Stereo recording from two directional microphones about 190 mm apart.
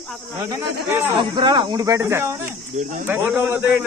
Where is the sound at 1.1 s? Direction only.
25° right (ahead or behind); by 3.7 s 10° right (ahead or behind).